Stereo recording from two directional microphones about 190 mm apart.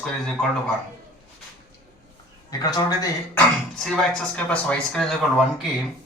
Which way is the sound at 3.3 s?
5° left (ahead or behind).